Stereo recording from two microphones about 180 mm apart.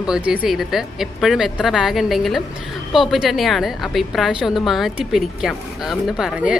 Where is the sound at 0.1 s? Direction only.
5° right (ahead or behind).